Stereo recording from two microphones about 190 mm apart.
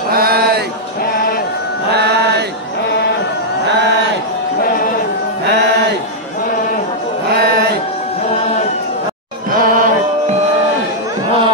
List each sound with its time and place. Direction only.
0.1 s a sound: 55° right (ahead or behind)
2.0 s mantra: 60° right (ahead or behind)
9.5 s music: 45° right (ahead or behind)